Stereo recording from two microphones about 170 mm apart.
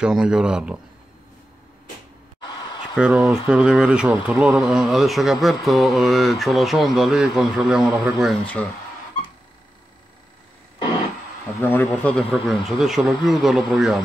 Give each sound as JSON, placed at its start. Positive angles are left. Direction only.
{"t": 0.0, "sound": "speech", "side_deg": -5}
{"t": 2.4, "sound": "a sound", "side_deg": 25}
{"t": 3.0, "sound": "speech", "side_deg": 0}
{"t": 11.6, "sound": "speech", "side_deg": 10}